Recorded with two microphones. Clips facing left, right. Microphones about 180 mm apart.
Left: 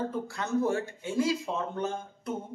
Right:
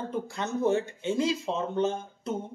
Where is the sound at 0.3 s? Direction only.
20° right (ahead or behind).